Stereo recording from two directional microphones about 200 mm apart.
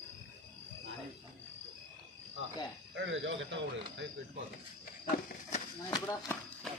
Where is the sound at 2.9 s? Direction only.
70° right (ahead or behind).